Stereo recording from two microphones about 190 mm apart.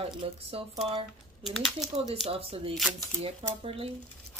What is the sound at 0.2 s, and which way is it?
Speech, 30° right (ahead or behind).